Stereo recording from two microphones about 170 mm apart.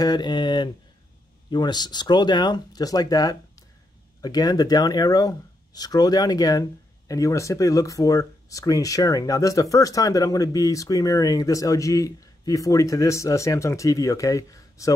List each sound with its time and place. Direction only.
0.0 s speech: 25° left (ahead or behind)